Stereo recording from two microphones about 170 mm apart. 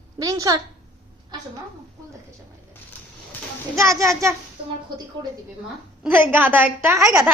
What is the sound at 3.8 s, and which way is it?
Speech, 20° right (ahead or behind).